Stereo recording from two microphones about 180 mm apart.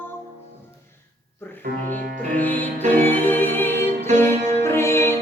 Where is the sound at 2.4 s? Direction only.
10° left (ahead or behind).